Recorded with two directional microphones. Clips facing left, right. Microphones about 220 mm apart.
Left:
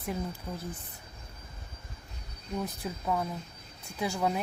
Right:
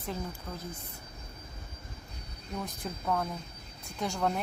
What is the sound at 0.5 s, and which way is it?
Speech, 15° left (ahead or behind).